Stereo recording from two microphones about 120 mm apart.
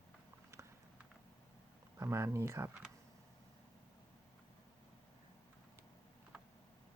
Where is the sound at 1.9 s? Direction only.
25° right (ahead or behind).